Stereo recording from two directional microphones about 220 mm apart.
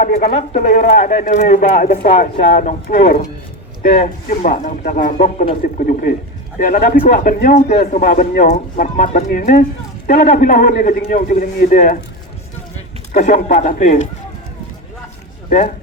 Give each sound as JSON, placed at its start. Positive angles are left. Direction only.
{"t": 0.0, "sound": "speech", "side_deg": 35}
{"t": 13.1, "sound": "speech", "side_deg": 30}
{"t": 15.4, "sound": "speech", "side_deg": 40}